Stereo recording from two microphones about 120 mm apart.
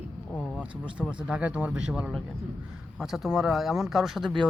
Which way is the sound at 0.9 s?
10° right (ahead or behind).